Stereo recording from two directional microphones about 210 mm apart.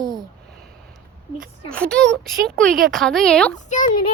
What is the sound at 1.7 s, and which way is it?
A child's voice, 5° left (ahead or behind).